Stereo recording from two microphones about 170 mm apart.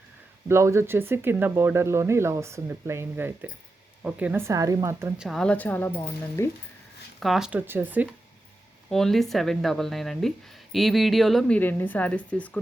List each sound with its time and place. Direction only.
0.4 s speech: 15° right (ahead or behind)
5.1 s a woman's voice: centre (ahead or behind); by 6.5 s 15° left (ahead or behind)
7.2 s speech: centre (ahead or behind)
8.9 s speech: centre (ahead or behind)